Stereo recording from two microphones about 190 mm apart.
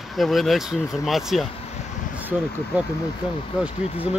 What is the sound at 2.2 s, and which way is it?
Speech, 10° right (ahead or behind).